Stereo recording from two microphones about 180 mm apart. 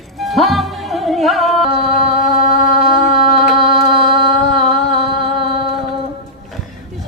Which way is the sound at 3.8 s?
30° right (ahead or behind).